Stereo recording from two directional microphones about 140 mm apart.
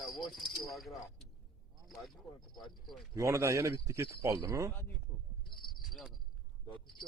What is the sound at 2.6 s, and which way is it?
Speech, centre (ahead or behind).